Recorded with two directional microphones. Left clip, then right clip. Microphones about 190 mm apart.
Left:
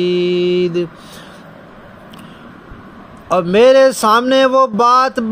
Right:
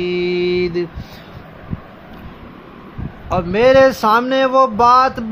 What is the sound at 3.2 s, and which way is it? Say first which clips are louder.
Speech: left 4 dB; 30° left (ahead or behind).